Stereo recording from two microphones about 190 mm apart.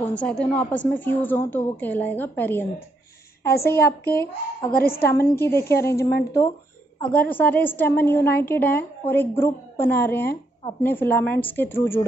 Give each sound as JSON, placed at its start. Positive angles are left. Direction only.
{"t": 0.0, "sound": "a woman's voice", "side_deg": 5}
{"t": 3.4, "sound": "a child's voice", "side_deg": 55}
{"t": 5.0, "sound": "a woman's voice", "side_deg": 15}